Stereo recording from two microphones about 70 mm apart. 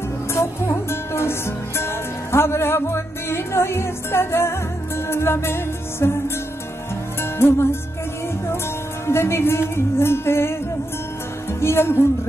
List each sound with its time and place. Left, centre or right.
0.3 s music: left
9.0 s music: left
11.6 s music: left